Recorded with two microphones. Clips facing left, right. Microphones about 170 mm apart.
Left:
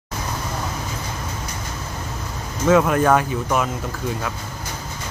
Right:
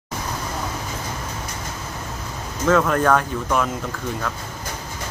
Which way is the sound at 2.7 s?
10° left (ahead or behind).